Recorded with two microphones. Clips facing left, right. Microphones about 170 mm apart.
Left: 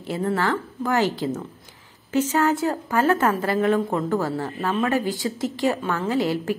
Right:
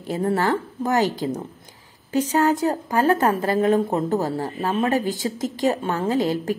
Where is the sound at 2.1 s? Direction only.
35° right (ahead or behind).